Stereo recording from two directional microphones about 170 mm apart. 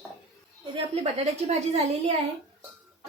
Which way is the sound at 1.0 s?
40° right (ahead or behind).